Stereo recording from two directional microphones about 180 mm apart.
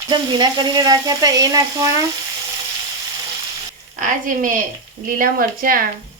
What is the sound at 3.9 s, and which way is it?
A woman's voice, 45° right (ahead or behind).